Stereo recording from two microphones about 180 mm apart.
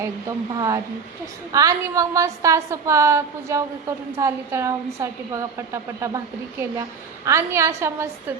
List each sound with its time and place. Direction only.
0.0 s a woman's voice: 20° right (ahead or behind)